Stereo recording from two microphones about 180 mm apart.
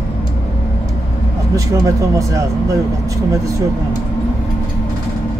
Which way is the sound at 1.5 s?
20° right (ahead or behind).